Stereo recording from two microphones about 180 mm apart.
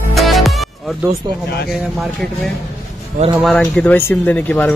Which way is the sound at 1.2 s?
25° right (ahead or behind).